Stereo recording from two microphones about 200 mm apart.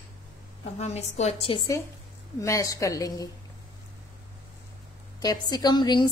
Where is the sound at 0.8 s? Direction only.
35° left (ahead or behind).